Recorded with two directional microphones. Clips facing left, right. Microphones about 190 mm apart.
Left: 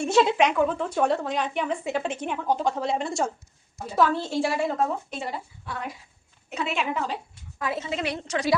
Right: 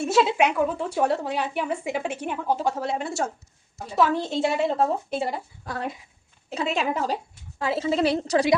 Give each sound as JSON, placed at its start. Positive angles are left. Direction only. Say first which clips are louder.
{"t": 0.0, "sound": "speech", "louder": "even", "side_deg": -5}
{"t": 4.1, "sound": "a woman's voice", "louder": "right 2 dB", "side_deg": -20}
{"t": 5.2, "sound": "a woman's voice", "louder": "right 5 dB", "side_deg": -35}